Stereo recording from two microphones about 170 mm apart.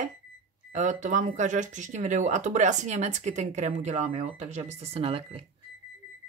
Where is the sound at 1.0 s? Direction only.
45° right (ahead or behind).